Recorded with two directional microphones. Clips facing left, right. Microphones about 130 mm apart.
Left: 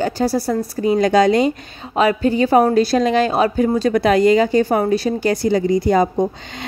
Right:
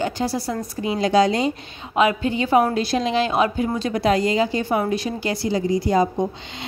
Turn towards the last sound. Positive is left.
turn(degrees=55)  # may be behind; listen again after turning